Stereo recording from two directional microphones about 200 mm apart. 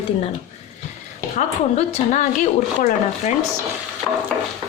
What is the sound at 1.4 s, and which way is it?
A woman's voice, 35° left (ahead or behind).